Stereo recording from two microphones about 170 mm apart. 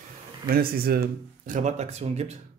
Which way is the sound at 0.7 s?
65° right (ahead or behind).